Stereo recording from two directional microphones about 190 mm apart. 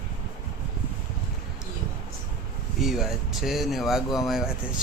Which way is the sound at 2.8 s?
Centre (ahead or behind).